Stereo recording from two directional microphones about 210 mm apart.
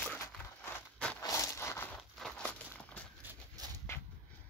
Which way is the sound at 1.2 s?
15° left (ahead or behind).